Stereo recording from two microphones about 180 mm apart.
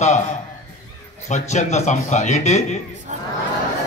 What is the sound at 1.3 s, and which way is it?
A man's voice, 40° left (ahead or behind).